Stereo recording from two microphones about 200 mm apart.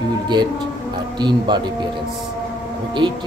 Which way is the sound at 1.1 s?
20° right (ahead or behind).